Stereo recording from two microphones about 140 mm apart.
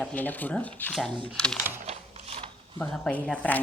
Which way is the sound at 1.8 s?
45° right (ahead or behind).